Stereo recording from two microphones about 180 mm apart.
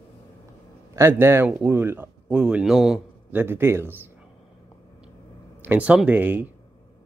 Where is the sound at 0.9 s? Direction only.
15° right (ahead or behind).